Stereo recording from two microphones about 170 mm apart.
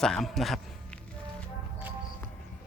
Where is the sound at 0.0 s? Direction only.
Centre (ahead or behind).